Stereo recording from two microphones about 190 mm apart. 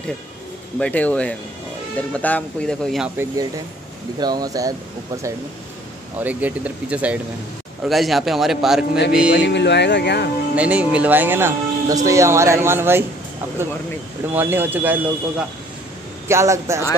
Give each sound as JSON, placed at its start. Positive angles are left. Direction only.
{"t": 0.7, "sound": "speech", "side_deg": 5}
{"t": 3.2, "sound": "speech", "side_deg": -20}
{"t": 9.3, "sound": "speech", "side_deg": 65}
{"t": 10.5, "sound": "speech", "side_deg": -5}
{"t": 14.3, "sound": "speech", "side_deg": -10}